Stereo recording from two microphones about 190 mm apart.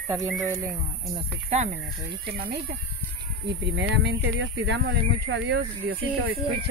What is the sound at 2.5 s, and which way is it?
Speech, 55° right (ahead or behind).